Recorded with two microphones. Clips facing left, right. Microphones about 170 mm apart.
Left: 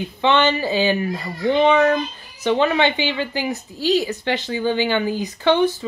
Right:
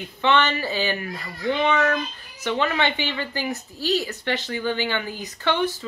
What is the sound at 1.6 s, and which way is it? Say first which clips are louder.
A woman's voice: left 6 dB; 30° left (ahead or behind).